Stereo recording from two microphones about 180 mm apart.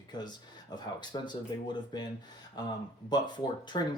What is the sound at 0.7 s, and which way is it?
Speech, 25° left (ahead or behind).